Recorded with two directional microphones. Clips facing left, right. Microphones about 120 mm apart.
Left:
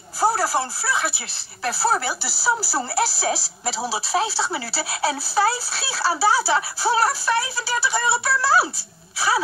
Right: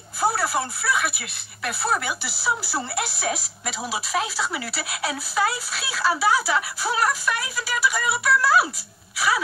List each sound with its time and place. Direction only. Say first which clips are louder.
0.2 s speech: left 3 dB; 35° left (ahead or behind)